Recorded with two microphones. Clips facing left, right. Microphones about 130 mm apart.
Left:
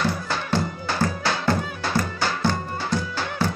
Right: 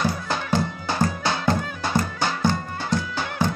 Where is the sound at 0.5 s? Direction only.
20° right (ahead or behind).